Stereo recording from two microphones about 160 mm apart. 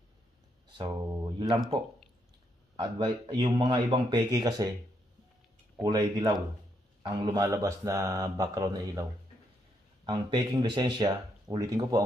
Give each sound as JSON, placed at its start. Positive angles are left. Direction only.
{"t": 0.7, "sound": "speech", "side_deg": -25}
{"t": 2.7, "sound": "speech", "side_deg": -30}
{"t": 5.8, "sound": "speech", "side_deg": -25}
{"t": 10.0, "sound": "speech", "side_deg": -30}